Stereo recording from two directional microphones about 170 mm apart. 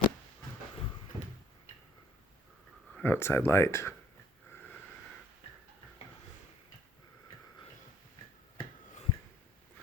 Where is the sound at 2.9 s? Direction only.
15° left (ahead or behind).